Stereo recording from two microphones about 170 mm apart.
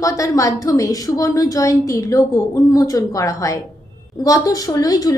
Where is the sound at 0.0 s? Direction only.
20° left (ahead or behind).